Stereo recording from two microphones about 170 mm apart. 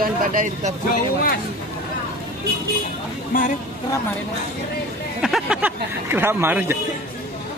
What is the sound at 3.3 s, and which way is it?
Speech, 55° left (ahead or behind).